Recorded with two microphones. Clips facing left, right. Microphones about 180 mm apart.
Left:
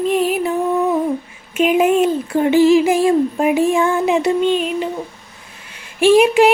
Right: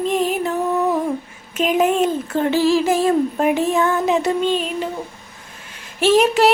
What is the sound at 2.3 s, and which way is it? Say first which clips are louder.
Female singing: left 6 dB; 15° left (ahead or behind).